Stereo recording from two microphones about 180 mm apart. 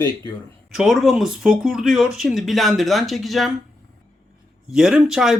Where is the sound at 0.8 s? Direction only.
Centre (ahead or behind).